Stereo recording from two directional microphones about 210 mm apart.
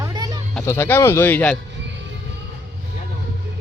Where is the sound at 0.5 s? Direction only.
10° left (ahead or behind).